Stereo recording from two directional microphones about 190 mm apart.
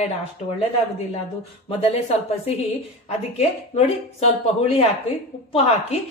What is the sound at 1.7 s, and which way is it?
A woman's voice, 30° left (ahead or behind).